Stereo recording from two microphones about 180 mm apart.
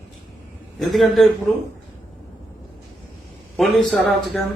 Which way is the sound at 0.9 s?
Centre (ahead or behind).